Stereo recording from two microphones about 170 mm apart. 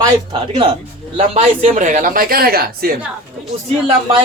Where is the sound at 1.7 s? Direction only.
50° right (ahead or behind).